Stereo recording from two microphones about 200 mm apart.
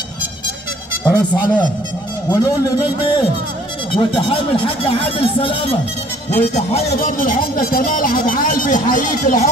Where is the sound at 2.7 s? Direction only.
25° left (ahead or behind).